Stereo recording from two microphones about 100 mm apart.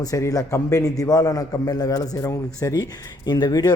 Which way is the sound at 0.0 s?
35° left (ahead or behind).